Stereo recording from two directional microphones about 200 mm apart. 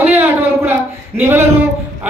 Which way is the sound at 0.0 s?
10° right (ahead or behind).